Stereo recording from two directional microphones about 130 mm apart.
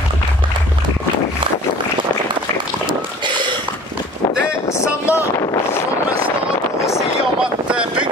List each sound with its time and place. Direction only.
4.7 s vehicle: 20° left (ahead or behind)
7.6 s boat: 10° right (ahead or behind)